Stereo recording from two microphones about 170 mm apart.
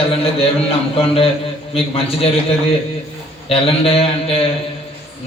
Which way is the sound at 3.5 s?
35° left (ahead or behind).